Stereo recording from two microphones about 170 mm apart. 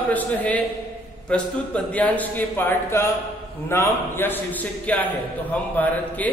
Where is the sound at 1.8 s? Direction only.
10° left (ahead or behind).